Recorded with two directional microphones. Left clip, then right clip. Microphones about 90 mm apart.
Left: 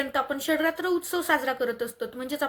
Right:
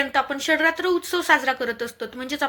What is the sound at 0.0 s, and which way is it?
Speech, 40° left (ahead or behind).